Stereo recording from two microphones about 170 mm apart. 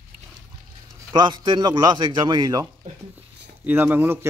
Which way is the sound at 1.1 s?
25° right (ahead or behind).